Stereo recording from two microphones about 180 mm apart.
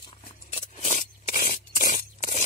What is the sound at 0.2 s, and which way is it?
Scrape, 40° left (ahead or behind).